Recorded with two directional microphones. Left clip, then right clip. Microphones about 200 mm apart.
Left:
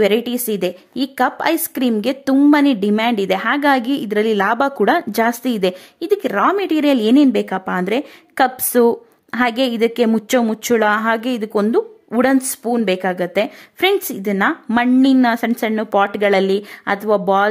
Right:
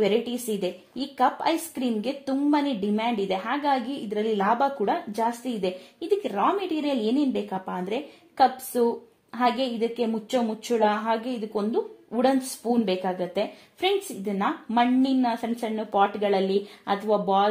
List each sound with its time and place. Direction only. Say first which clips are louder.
0.0 s a woman's voice: left 8 dB; 35° left (ahead or behind)